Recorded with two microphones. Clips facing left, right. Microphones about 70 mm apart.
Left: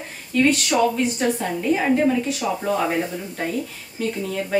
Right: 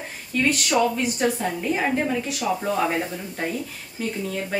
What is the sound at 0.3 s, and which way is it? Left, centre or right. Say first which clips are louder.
Speech: left 3 dB; centre.